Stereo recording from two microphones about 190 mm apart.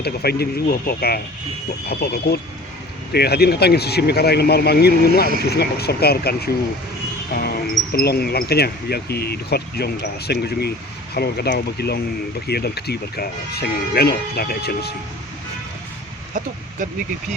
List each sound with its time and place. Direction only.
0.0 s speech: 55° left (ahead or behind)